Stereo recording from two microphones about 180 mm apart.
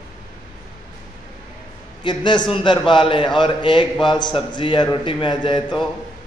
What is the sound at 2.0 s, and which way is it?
A man's voice, 25° left (ahead or behind).